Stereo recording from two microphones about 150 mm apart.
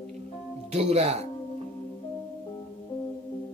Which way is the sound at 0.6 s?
45° right (ahead or behind).